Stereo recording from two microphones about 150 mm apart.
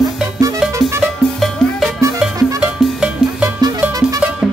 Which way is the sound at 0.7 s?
20° right (ahead or behind).